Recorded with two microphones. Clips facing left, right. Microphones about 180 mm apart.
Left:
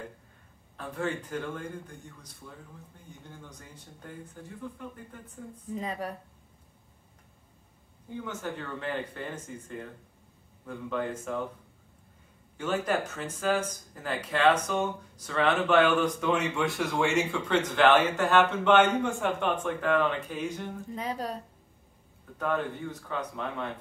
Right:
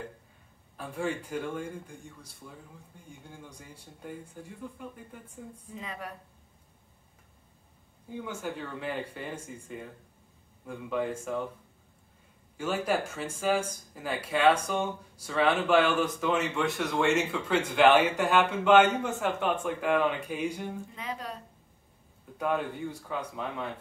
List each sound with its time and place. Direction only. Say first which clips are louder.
0.7 s speech: even; 10° right (ahead or behind)
5.8 s speech: left 6 dB; 35° left (ahead or behind)
8.2 s speech: even; 10° right (ahead or behind)
12.5 s speech: even; 10° right (ahead or behind)
20.9 s speech: left 5 dB; 40° left (ahead or behind)
22.4 s speech: even; 10° right (ahead or behind)